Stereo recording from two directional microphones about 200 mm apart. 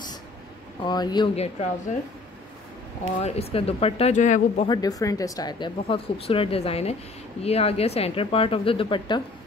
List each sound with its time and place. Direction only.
0.8 s speech: 20° left (ahead or behind)
3.2 s speech: 30° left (ahead or behind)
4.6 s speech: 20° left (ahead or behind)